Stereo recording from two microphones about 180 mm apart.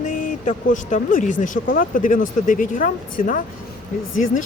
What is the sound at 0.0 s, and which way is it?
Speech, 45° left (ahead or behind).